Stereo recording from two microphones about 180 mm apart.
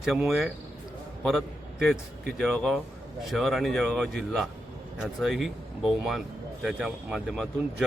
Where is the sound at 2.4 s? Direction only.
5° left (ahead or behind).